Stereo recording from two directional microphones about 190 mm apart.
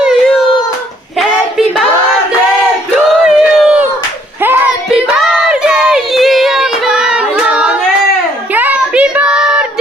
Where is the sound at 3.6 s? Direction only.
5° right (ahead or behind).